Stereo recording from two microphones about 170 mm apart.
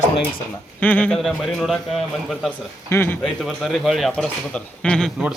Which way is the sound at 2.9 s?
10° left (ahead or behind).